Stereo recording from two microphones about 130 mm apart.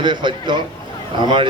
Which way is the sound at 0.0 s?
35° right (ahead or behind).